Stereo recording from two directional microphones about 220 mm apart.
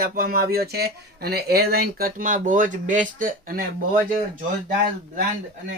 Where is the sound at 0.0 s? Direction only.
40° right (ahead or behind).